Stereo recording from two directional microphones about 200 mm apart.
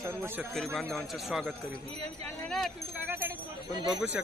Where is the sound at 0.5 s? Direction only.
Centre (ahead or behind).